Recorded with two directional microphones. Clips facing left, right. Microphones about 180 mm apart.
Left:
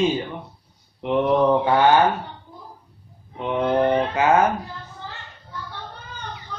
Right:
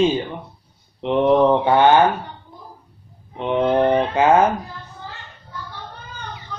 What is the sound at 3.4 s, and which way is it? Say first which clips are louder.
Speech: right 3 dB; 25° right (ahead or behind).